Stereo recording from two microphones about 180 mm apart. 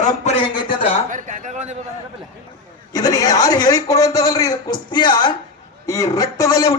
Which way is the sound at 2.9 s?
20° left (ahead or behind).